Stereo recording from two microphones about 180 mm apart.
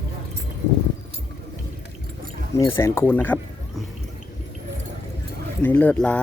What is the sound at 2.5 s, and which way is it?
Speech, 15° left (ahead or behind).